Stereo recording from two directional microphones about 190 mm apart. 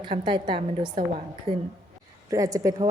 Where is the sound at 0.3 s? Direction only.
25° right (ahead or behind).